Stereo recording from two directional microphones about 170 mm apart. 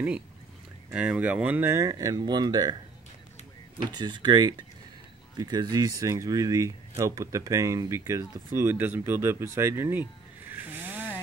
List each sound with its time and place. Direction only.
0.9 s speech: 5° right (ahead or behind); by 2.7 s 25° right (ahead or behind)
3.9 s speech: 25° right (ahead or behind)
10.5 s a sound: 10° right (ahead or behind)